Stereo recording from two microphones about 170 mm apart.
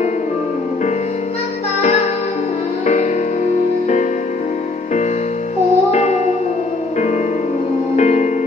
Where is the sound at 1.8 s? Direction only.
45° left (ahead or behind).